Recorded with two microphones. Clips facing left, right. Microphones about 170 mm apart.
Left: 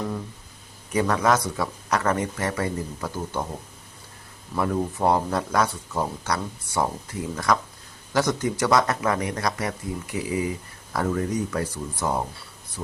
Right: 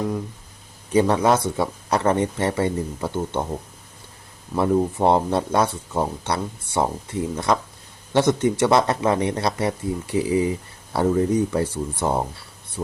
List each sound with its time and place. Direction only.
0.9 s speech: 30° right (ahead or behind)
4.5 s speech: 25° right (ahead or behind)